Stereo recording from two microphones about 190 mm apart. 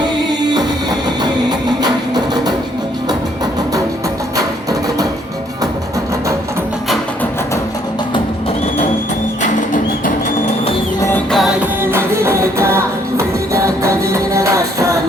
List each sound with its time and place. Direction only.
0.5 s music: 20° right (ahead or behind)
4.4 s music: 20° right (ahead or behind)
9.4 s music: 40° left (ahead or behind)
11.3 s music: centre (ahead or behind)